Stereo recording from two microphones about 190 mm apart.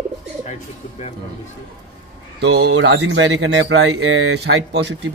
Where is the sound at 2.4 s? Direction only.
65° right (ahead or behind).